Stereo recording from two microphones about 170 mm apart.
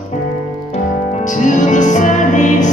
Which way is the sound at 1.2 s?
45° left (ahead or behind).